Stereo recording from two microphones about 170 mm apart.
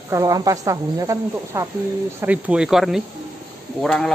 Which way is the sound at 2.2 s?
5° right (ahead or behind).